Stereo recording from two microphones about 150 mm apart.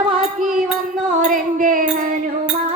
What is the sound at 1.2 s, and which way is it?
Music, 65° right (ahead or behind).